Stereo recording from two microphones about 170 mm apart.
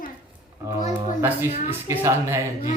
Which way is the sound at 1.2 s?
10° right (ahead or behind).